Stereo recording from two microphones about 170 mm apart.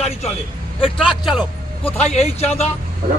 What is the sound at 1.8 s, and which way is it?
Speech, 40° left (ahead or behind).